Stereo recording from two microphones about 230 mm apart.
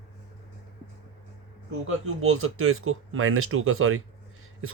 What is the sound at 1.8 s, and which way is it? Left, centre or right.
Speech, right.